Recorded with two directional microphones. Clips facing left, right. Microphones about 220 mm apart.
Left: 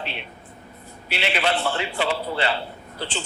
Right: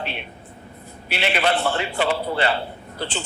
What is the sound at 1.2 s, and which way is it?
A man's voice, 55° right (ahead or behind).